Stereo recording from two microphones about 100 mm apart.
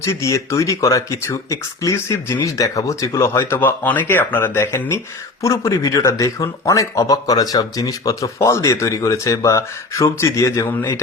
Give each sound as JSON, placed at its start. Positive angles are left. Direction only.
{"t": 0.0, "sound": "speech", "side_deg": 30}